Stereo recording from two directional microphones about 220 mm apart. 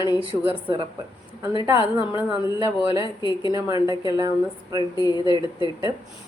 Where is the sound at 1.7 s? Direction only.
20° left (ahead or behind).